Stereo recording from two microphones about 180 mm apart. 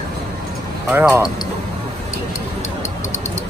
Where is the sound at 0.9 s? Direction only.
10° right (ahead or behind).